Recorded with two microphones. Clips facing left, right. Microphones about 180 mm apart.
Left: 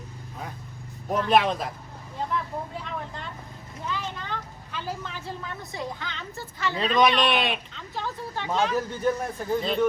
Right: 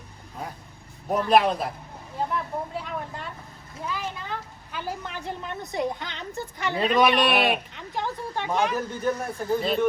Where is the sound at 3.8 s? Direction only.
10° right (ahead or behind).